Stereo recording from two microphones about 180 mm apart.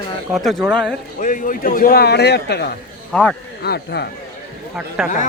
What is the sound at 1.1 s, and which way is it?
A man's voice, 45° left (ahead or behind).